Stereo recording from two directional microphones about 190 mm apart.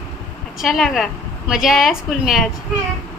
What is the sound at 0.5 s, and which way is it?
Speech, centre (ahead or behind).